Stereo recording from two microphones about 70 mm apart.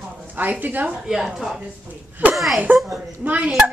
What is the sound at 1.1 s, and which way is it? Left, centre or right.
A woman's voice, centre.